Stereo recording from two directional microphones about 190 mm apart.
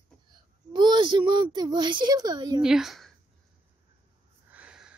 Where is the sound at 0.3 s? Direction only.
25° right (ahead or behind).